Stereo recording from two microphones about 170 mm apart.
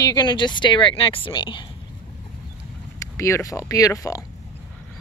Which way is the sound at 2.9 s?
15° left (ahead or behind).